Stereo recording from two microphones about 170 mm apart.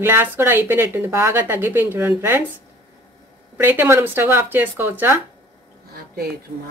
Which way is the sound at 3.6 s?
10° right (ahead or behind).